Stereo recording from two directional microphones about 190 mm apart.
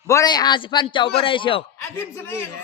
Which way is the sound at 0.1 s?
20° left (ahead or behind).